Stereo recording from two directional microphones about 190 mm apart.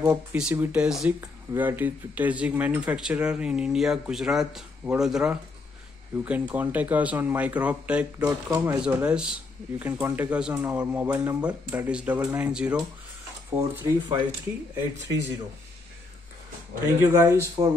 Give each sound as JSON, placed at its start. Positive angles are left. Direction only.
{"t": 0.0, "sound": "speech", "side_deg": -10}
{"t": 13.6, "sound": "speech", "side_deg": -15}
{"t": 16.8, "sound": "speech", "side_deg": -15}